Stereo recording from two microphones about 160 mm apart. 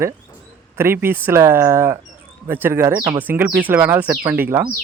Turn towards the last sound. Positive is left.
turn(degrees=-10)  # may be behind; listen again after turning